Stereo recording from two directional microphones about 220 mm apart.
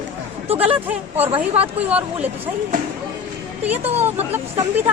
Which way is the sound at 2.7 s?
35° right (ahead or behind).